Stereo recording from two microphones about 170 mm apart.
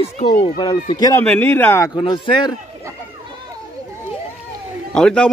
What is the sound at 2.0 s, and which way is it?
Speech, 30° left (ahead or behind).